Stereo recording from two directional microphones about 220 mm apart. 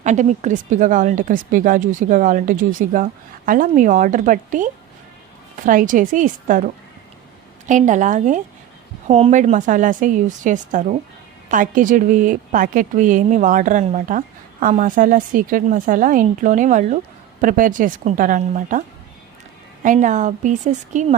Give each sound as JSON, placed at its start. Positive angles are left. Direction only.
{"t": 0.0, "sound": "a woman's voice", "side_deg": -35}
{"t": 7.7, "sound": "a woman's voice", "side_deg": -35}
{"t": 19.8, "sound": "a woman's voice", "side_deg": -35}